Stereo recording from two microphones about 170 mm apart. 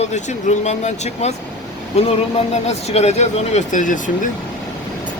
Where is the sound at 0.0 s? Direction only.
40° left (ahead or behind).